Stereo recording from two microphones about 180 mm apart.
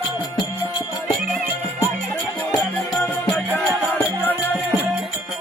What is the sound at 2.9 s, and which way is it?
Music, 5° left (ahead or behind).